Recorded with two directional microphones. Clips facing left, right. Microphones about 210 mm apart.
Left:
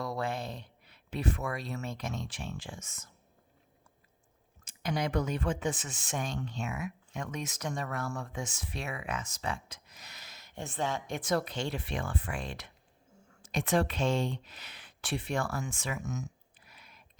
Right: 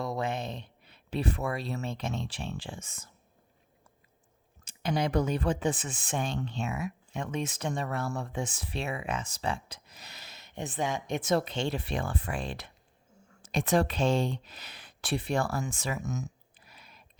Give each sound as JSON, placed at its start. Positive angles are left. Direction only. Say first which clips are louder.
{"t": 0.0, "sound": "speech", "louder": "right 2 dB", "side_deg": -20}
{"t": 4.6, "sound": "speech", "louder": "right 3 dB", "side_deg": -30}